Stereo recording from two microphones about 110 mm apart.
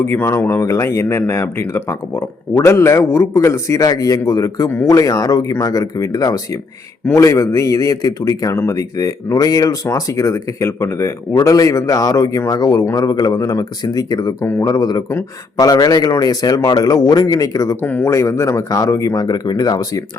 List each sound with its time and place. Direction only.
0.0 s a man's voice: 20° left (ahead or behind)
17.8 s speech: 15° left (ahead or behind)
18.1 s a man's voice: 30° left (ahead or behind)